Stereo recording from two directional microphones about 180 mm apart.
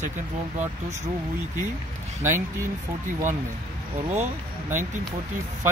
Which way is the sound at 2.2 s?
15° right (ahead or behind).